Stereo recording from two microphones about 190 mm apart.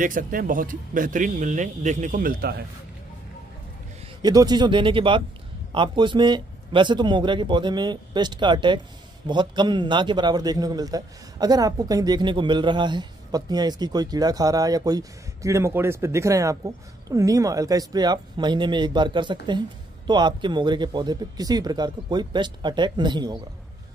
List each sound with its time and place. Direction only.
0.0 s speech: 45° right (ahead or behind)
4.2 s a man's voice: 20° right (ahead or behind)